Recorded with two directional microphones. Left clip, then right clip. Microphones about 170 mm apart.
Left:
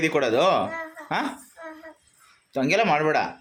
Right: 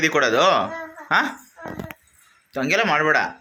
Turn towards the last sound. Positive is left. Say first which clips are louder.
# right 3 dB
turn(degrees=5)  # may be behind; listen again after turning